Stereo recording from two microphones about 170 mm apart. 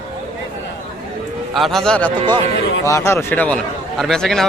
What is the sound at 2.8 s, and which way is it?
A man's voice, 15° left (ahead or behind).